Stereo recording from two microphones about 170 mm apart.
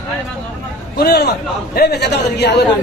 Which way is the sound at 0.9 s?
70° left (ahead or behind).